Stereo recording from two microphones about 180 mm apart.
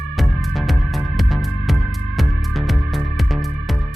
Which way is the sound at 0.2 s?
Centre (ahead or behind).